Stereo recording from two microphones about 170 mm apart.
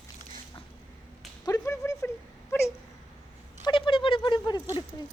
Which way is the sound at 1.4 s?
20° left (ahead or behind).